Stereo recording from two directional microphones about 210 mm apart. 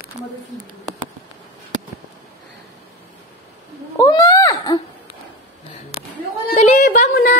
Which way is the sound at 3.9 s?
15° left (ahead or behind).